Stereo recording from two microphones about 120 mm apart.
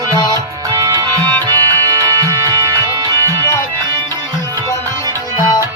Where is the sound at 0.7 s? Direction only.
30° right (ahead or behind).